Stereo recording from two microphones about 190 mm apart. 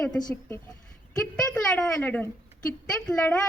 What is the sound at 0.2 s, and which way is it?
Speech, 15° left (ahead or behind).